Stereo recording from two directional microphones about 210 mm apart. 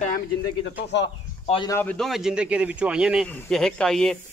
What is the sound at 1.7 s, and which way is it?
A man's voice, 5° left (ahead or behind).